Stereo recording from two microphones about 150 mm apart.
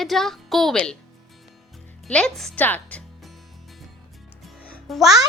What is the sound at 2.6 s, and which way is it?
Music, 10° left (ahead or behind).